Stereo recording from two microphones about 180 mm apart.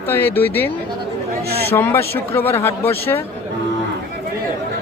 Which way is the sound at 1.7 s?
10° left (ahead or behind).